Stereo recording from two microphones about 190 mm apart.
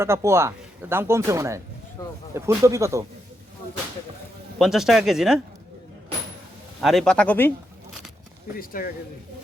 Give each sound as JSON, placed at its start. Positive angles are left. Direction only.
{"t": 0.0, "sound": "speech", "side_deg": -15}
{"t": 2.0, "sound": "speech", "side_deg": 15}
{"t": 2.3, "sound": "speech", "side_deg": -15}
{"t": 4.5, "sound": "speech", "side_deg": 0}
{"t": 6.8, "sound": "speech", "side_deg": 5}
{"t": 8.5, "sound": "speech", "side_deg": 50}